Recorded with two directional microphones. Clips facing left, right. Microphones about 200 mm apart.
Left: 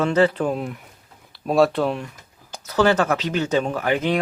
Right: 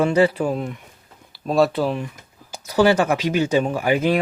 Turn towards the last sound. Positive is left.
turn(degrees=-10)  # may be behind; listen again after turning